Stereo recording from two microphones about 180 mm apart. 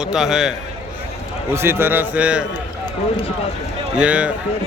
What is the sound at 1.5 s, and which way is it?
Speech, 15° right (ahead or behind).